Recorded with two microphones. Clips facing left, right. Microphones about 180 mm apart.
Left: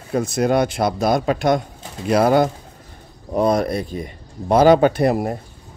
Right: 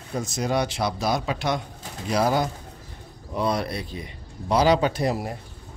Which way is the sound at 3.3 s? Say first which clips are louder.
Left 8 dB; 45° left (ahead or behind).